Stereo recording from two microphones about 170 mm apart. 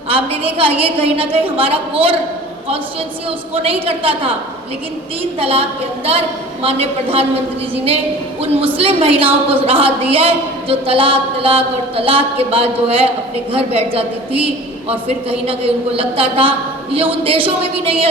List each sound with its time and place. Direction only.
0.1 s speech: 35° right (ahead or behind)
3.2 s speech: 35° right (ahead or behind)
5.4 s speech: 35° right (ahead or behind)
8.4 s speech: 35° right (ahead or behind)